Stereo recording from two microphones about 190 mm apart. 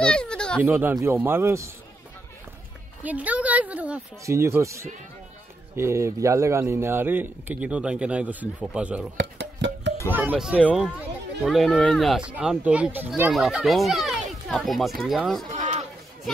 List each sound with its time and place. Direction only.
0.0 s a sound: 5° left (ahead or behind)
0.6 s a man's voice: 10° right (ahead or behind)
3.0 s a man's voice: 10° right (ahead or behind)
9.1 s music: 70° right (ahead or behind)
10.0 s a man's voice: 10° right (ahead or behind)
15.5 s a sound: 40° right (ahead or behind)